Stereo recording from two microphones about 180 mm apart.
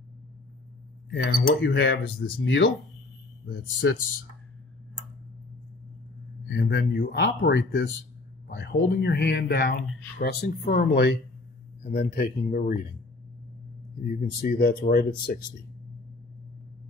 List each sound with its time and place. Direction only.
1.1 s speech: 75° left (ahead or behind)
3.4 s speech: 75° left (ahead or behind)
6.5 s speech: 80° left; by 12.8 s 55° left (ahead or behind)
14.0 s speech: 55° left (ahead or behind)